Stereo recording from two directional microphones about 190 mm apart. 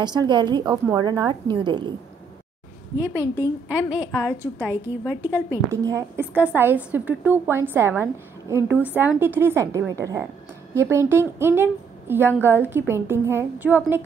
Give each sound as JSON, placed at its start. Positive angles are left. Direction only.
{"t": 0.0, "sound": "a woman's voice", "side_deg": -20}
{"t": 3.0, "sound": "a woman's voice", "side_deg": -15}